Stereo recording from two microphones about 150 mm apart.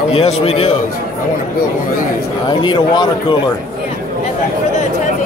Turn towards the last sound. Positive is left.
turn(degrees=30)  # may be behind; listen again after turning